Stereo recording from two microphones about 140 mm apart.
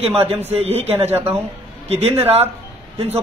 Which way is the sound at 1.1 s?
15° right (ahead or behind).